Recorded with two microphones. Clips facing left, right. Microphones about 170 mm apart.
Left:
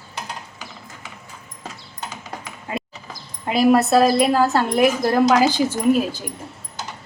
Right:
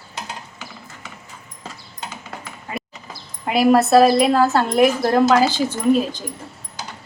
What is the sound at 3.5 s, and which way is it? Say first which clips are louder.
Speech: right 1 dB; centre (ahead or behind).